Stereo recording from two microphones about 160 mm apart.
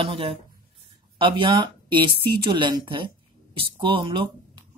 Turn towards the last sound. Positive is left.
turn(degrees=-30)  # may be behind; listen again after turning